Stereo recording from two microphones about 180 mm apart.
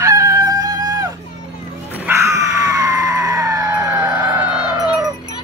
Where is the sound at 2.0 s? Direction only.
15° right (ahead or behind).